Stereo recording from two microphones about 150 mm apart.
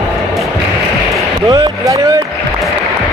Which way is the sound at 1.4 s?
30° right (ahead or behind).